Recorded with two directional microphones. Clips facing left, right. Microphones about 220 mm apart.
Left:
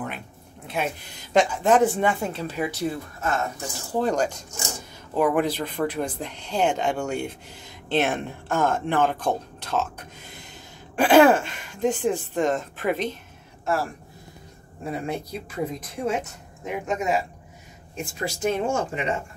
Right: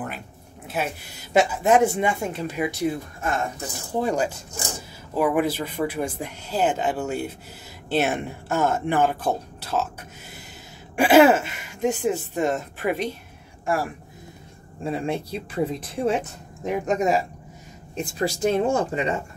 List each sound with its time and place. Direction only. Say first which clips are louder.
0.7 s speech: even; 5° right (ahead or behind)
14.8 s speech: right 3 dB; 25° right (ahead or behind)
18.2 s speech: right 3 dB; 35° right (ahead or behind)